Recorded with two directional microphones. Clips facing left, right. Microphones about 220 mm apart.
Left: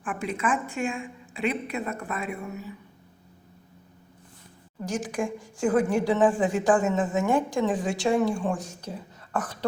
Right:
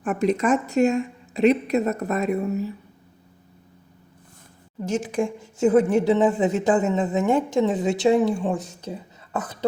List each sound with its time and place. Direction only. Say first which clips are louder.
0.0 s speech: right 8 dB; 40° right (ahead or behind)
4.9 s a woman's voice: right 5 dB; 25° right (ahead or behind)